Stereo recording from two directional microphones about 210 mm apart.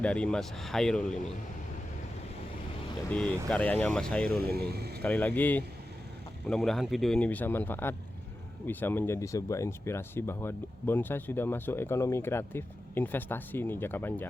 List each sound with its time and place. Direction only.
0.0 s speech: 5° left (ahead or behind)
3.1 s speech: 5° left (ahead or behind)
4.3 s speech: 50° right (ahead or behind)
5.0 s speech: 5° left (ahead or behind)